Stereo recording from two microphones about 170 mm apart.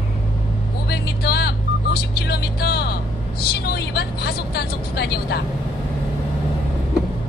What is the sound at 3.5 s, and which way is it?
Speech, 70° left (ahead or behind).